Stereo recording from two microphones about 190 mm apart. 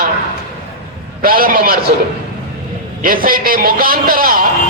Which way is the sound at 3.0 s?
50° right (ahead or behind).